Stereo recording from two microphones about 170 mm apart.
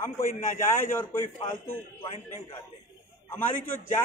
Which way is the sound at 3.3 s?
10° left (ahead or behind).